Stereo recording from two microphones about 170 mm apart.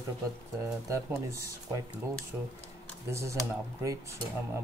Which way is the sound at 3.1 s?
15° right (ahead or behind).